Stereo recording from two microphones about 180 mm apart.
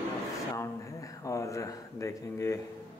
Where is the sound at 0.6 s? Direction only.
15° left (ahead or behind).